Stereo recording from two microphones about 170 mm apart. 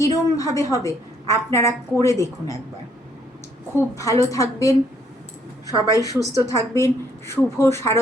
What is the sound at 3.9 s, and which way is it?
Speech, 20° left (ahead or behind).